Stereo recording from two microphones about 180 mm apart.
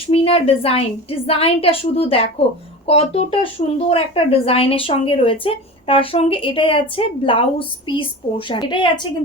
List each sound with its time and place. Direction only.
0.1 s speech: 35° left (ahead or behind)
8.4 s a woman's voice: 25° left (ahead or behind)